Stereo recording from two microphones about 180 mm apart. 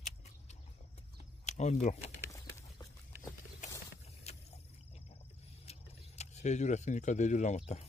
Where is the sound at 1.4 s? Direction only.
40° left (ahead or behind).